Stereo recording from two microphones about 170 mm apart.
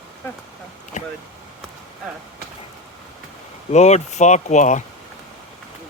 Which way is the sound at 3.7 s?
40° left (ahead or behind).